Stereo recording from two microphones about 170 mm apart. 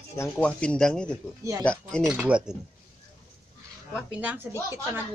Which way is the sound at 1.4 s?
20° right (ahead or behind).